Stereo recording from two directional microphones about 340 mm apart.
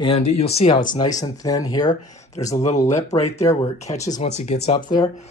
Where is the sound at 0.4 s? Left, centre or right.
Centre.